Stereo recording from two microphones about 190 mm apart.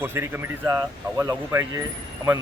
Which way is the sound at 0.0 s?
10° right (ahead or behind).